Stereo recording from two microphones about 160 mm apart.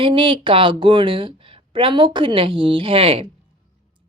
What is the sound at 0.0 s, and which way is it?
A woman's voice, 30° right (ahead or behind).